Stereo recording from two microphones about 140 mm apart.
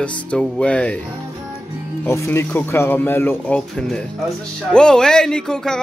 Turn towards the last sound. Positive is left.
turn(degrees=5)  # may be behind; listen again after turning